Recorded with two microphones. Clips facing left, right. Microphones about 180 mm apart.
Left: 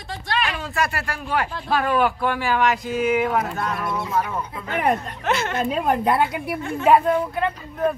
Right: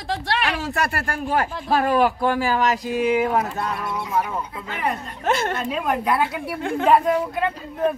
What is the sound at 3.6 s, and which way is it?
Speech, 15° right (ahead or behind).